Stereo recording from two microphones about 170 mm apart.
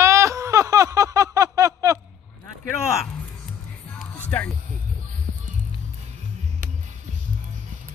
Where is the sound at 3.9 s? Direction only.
10° left (ahead or behind).